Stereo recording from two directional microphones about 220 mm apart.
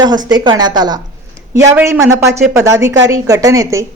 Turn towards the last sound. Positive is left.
turn(degrees=-15)  # may be behind; listen again after turning